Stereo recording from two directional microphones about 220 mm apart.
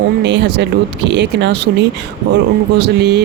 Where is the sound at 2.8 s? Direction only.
50° right (ahead or behind).